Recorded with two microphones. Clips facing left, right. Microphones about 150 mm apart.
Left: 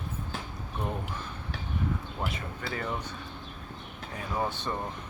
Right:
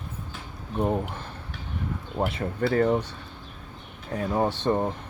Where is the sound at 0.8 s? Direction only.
35° right (ahead or behind).